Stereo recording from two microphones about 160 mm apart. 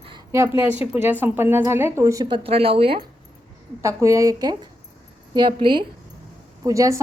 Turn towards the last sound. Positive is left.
turn(degrees=-20)  # may be behind; listen again after turning